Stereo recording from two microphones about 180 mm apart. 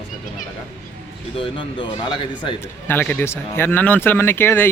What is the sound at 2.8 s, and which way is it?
Speech, 10° left (ahead or behind).